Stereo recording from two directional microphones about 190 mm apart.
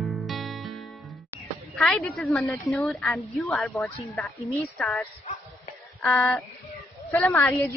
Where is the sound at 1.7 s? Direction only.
Centre (ahead or behind).